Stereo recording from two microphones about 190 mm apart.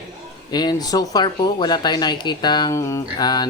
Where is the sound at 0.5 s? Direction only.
20° left (ahead or behind).